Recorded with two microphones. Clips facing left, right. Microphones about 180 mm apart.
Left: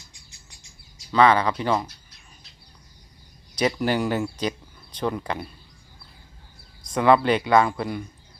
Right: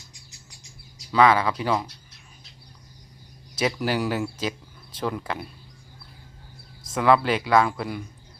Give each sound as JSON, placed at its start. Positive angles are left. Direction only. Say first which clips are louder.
{"t": 1.1, "sound": "speech", "louder": "left 1 dB", "side_deg": -5}
{"t": 3.6, "sound": "speech", "louder": "left 2 dB", "side_deg": 0}
{"t": 6.9, "sound": "speech", "louder": "left 2 dB", "side_deg": 0}